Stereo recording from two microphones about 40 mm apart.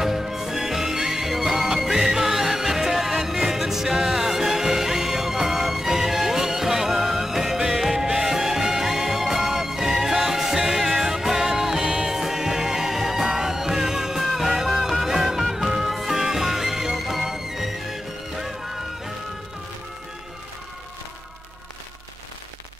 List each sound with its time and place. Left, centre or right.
0.0 s music: centre
11.8 s music: right
12.2 s music: centre